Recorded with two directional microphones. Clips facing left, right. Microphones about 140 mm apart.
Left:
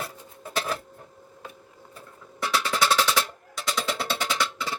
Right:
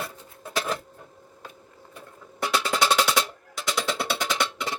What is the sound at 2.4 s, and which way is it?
Music, 20° right (ahead or behind).